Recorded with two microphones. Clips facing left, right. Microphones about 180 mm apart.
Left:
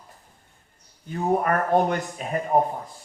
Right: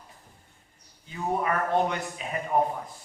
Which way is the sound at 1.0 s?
50° left (ahead or behind).